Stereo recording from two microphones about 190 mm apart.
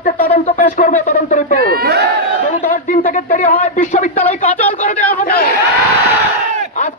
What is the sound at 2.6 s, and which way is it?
Speech, 45° left (ahead or behind).